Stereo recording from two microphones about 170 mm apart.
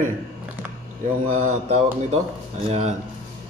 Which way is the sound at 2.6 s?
40° right (ahead or behind).